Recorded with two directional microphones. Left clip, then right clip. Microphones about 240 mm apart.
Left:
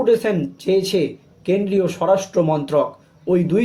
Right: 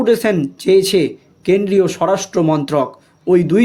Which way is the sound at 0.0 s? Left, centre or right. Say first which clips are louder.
Right 3 dB; right.